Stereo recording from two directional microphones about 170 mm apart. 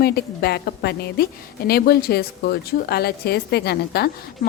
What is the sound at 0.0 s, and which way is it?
A woman's voice, 70° left (ahead or behind).